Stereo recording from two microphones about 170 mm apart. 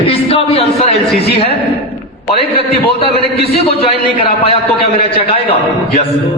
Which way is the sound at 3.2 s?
35° left (ahead or behind).